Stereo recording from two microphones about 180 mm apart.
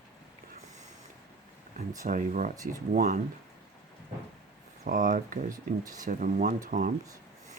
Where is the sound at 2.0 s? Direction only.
45° right (ahead or behind).